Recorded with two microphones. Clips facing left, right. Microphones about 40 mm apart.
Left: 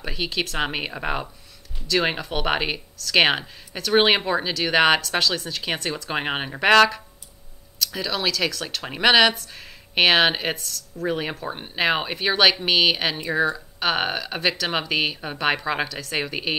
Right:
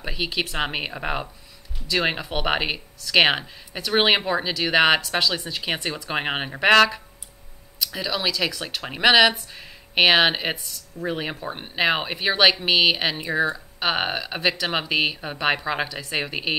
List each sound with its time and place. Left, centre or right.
0.0 s a sound: centre
0.3 s speech: centre
0.6 s speech: centre
7.9 s speech: centre
9.2 s speech: centre
9.5 s speech: centre
10.5 s speech: centre
11.1 s speech: centre
15.9 s speech: centre
16.2 s speech: centre